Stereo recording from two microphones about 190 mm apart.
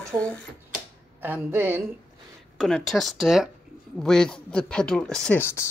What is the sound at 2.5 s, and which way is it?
Speech, centre (ahead or behind).